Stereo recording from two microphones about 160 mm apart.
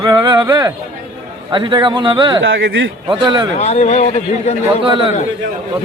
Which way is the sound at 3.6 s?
45° left (ahead or behind).